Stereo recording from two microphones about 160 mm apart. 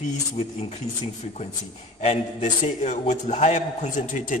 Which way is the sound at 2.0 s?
45° left (ahead or behind).